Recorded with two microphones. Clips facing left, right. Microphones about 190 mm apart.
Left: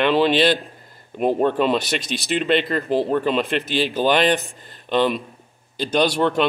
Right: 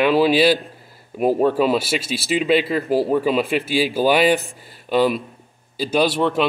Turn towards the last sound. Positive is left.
turn(degrees=-5)  # may be behind; listen again after turning